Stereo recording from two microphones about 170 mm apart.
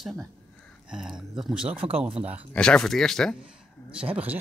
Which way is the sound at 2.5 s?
5° left (ahead or behind).